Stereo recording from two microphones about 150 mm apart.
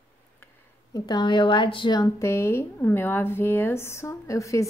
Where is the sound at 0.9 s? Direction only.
30° left (ahead or behind).